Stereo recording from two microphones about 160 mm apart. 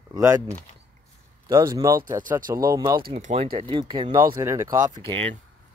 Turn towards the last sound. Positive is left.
turn(degrees=-35)  # may be behind; listen again after turning